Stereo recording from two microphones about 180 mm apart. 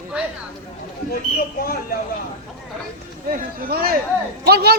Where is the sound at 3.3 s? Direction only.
55° right (ahead or behind).